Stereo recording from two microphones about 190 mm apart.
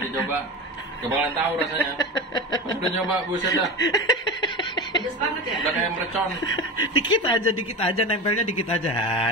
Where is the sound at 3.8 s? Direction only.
20° left (ahead or behind).